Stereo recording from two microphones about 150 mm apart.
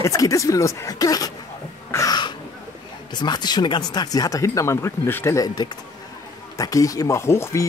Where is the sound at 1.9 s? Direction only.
25° left (ahead or behind).